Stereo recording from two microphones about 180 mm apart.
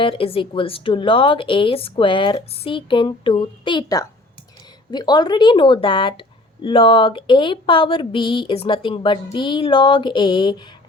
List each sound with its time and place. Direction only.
0.0 s speech: 30° left (ahead or behind)